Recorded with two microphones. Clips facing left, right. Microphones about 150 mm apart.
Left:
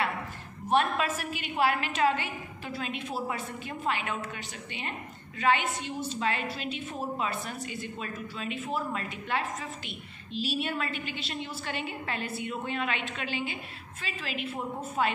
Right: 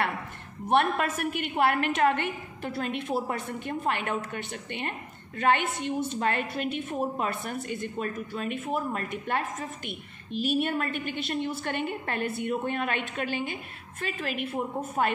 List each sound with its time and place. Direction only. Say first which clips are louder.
0.9 s a woman's voice: right 3 dB; 55° right (ahead or behind)